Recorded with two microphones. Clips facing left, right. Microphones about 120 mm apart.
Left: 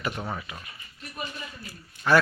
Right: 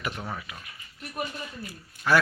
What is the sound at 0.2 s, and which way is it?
Speech, 10° left (ahead or behind).